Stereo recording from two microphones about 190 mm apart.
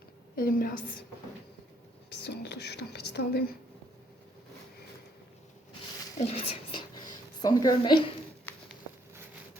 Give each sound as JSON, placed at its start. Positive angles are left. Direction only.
{"t": 0.3, "sound": "a woman's voice", "side_deg": 50}
{"t": 2.0, "sound": "speech", "side_deg": 65}
{"t": 6.1, "sound": "a sound", "side_deg": 35}
{"t": 7.4, "sound": "a woman's voice", "side_deg": 20}